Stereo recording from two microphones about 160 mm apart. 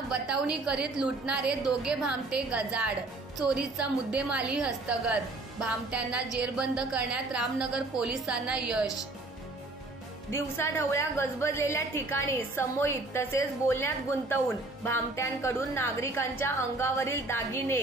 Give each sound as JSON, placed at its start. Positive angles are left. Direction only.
{"t": 0.1, "sound": "a woman's voice", "side_deg": -5}
{"t": 10.3, "sound": "a woman's voice", "side_deg": 15}